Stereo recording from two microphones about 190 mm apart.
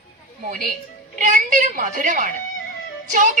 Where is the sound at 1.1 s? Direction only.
45° right (ahead or behind).